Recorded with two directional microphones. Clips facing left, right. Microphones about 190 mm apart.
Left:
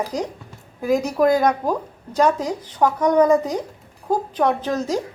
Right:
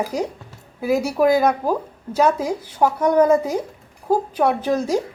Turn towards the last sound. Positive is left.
turn(degrees=-10)  # may be behind; listen again after turning